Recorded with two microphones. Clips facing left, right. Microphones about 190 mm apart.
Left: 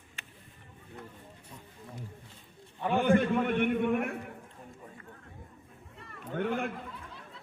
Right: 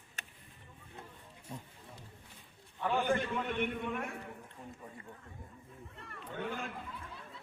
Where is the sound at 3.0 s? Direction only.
60° left (ahead or behind).